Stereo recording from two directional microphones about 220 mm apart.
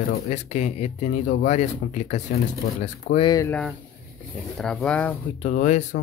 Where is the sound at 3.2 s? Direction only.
15° left (ahead or behind).